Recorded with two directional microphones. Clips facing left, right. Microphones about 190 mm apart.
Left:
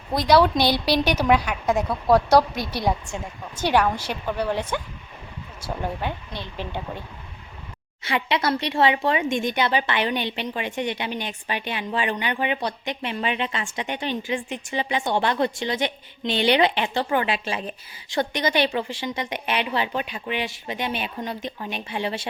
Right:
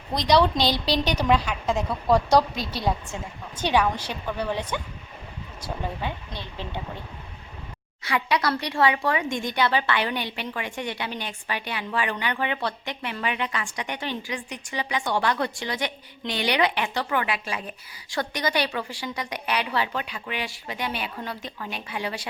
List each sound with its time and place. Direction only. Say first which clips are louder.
0.1 s a woman's voice: left 3 dB; 5° left (ahead or behind)
8.0 s speech: left 1 dB; 25° left (ahead or behind)